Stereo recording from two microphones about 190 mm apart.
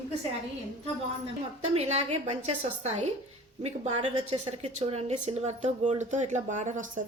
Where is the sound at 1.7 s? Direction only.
35° right (ahead or behind).